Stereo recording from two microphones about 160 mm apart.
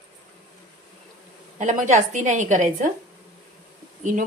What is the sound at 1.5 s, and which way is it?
A woman's voice, 50° right (ahead or behind).